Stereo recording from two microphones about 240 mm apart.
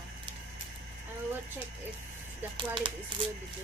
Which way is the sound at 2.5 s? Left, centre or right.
Right.